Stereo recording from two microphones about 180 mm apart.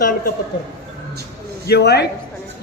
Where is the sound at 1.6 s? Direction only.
65° left (ahead or behind).